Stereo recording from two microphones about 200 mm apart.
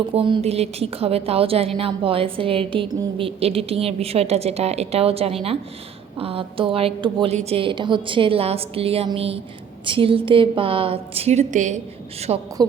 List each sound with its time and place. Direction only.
0.1 s a woman's voice: 25° right (ahead or behind)
12.3 s a woman's voice: 25° right (ahead or behind)